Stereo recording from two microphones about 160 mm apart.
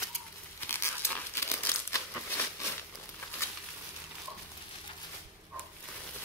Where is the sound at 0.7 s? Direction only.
15° left (ahead or behind).